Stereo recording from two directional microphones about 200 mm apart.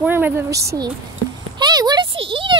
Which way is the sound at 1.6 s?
20° right (ahead or behind).